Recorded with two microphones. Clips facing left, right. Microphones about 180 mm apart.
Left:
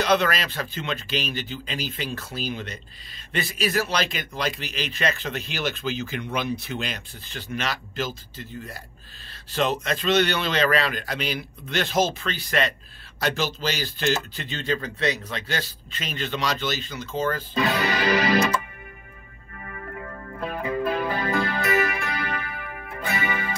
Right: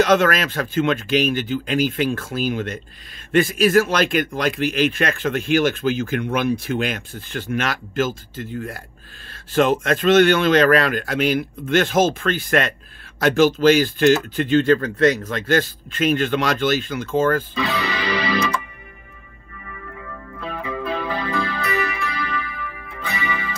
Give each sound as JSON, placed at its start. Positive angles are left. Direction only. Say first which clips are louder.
{"t": 0.0, "sound": "a man's voice", "louder": "right 6 dB", "side_deg": -50}
{"t": 17.6, "sound": "music", "louder": "even", "side_deg": 45}
{"t": 19.6, "sound": "music", "louder": "left 1 dB", "side_deg": 45}